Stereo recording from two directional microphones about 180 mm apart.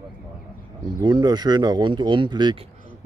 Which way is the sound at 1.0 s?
20° right (ahead or behind).